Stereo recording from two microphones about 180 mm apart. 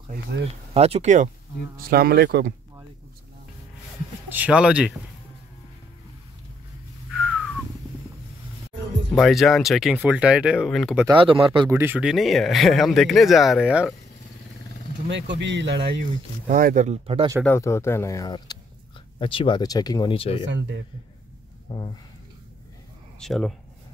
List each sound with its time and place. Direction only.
0.7 s speech: 35° right (ahead or behind)
1.8 s speech: 55° right (ahead or behind)
4.3 s speech: 10° right (ahead or behind)
7.2 s a sound: centre (ahead or behind)
9.1 s speech: centre (ahead or behind)
11.1 s speech: 30° right (ahead or behind)
11.7 s speech: 10° right (ahead or behind)
15.0 s speech: 80° right
16.0 s speech: 45° right (ahead or behind)
17.6 s speech: 15° left (ahead or behind); by 20.4 s 30° left (ahead or behind)
20.4 s speech: 90° right
21.6 s speech: 25° left (ahead or behind)
23.1 s speech: centre (ahead or behind)